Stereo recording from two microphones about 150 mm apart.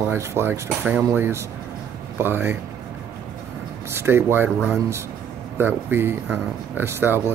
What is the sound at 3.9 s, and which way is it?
Speech, 15° right (ahead or behind).